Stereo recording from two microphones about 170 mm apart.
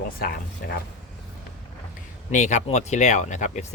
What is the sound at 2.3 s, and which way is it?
Speech, 45° left (ahead or behind).